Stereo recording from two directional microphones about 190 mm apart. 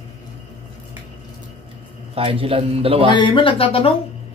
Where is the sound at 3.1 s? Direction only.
25° left (ahead or behind).